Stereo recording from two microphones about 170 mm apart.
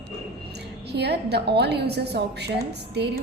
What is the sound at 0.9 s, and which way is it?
A woman's voice, 75° right (ahead or behind).